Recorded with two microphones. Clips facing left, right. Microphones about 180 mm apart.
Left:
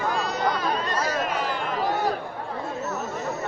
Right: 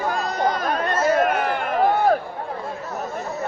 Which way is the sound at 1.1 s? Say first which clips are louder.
Right 7 dB; 55° right (ahead or behind).